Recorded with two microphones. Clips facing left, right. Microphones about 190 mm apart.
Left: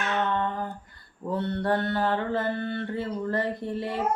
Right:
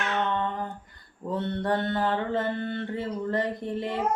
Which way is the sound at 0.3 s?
20° right (ahead or behind).